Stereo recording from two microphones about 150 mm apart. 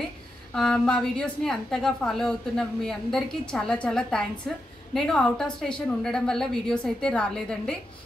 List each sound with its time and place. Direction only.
0.6 s a woman's voice: 5° left (ahead or behind)